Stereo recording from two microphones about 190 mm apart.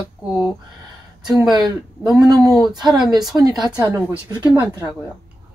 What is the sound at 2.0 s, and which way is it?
Speech, 5° right (ahead or behind).